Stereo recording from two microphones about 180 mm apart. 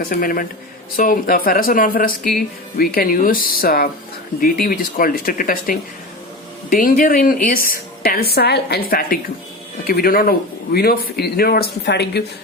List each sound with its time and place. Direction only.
0.0 s a woman's voice: 55° left (ahead or behind)